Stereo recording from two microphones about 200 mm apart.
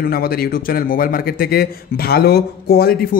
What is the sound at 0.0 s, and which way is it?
A man's voice, 50° left (ahead or behind).